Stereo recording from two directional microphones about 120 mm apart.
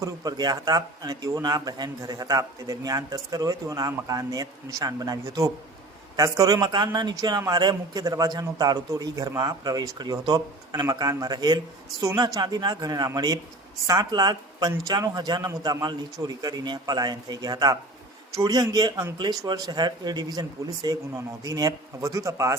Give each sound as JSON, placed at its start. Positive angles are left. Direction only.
{"t": 0.0, "sound": "a man's voice", "side_deg": -30}